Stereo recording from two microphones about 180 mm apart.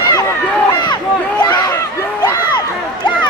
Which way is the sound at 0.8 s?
25° left (ahead or behind).